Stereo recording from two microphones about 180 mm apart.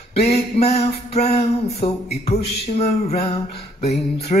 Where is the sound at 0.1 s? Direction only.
35° left (ahead or behind).